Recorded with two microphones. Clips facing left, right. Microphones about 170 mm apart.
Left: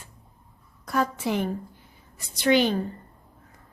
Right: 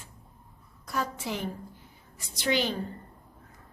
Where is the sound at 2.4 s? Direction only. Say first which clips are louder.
Left 7 dB; 60° left (ahead or behind).